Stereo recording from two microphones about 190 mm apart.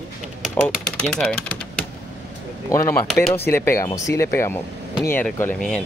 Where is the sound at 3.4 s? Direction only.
15° left (ahead or behind).